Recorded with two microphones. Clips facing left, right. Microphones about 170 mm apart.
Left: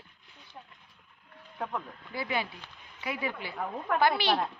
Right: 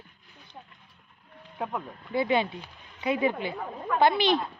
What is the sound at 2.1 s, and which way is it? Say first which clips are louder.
A woman's voice: right 8 dB; 25° right (ahead or behind).